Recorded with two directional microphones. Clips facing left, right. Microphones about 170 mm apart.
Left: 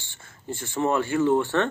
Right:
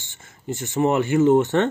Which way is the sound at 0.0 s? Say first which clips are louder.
Right 5 dB; 20° right (ahead or behind).